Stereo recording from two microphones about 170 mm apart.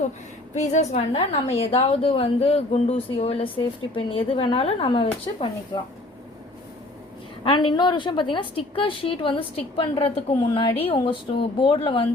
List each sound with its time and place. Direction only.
0.5 s a woman's voice: 45° left (ahead or behind)
7.4 s a woman's voice: 30° left (ahead or behind)